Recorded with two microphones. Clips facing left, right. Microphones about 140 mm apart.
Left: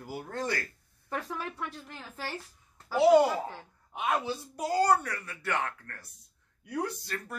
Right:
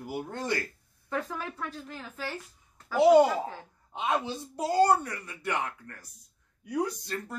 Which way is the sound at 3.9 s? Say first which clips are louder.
Right 1 dB; 25° right (ahead or behind).